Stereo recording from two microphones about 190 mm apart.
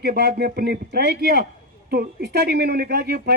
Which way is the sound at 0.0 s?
55° right (ahead or behind).